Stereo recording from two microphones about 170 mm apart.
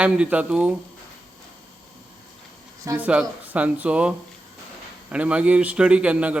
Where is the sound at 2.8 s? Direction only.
20° right (ahead or behind).